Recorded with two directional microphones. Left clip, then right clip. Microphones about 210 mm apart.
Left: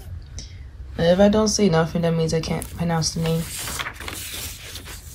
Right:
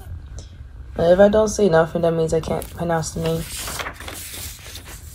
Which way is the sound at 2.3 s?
Centre (ahead or behind).